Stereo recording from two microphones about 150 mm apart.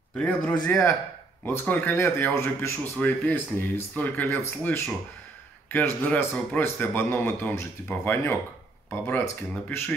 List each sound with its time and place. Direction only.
0.1 s a man's voice: 10° left (ahead or behind)
9.7 s speech: 15° left (ahead or behind)